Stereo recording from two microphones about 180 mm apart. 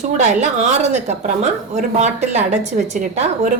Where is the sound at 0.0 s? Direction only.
40° right (ahead or behind).